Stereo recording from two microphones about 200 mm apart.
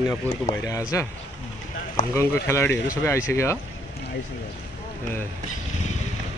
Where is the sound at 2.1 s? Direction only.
15° left (ahead or behind).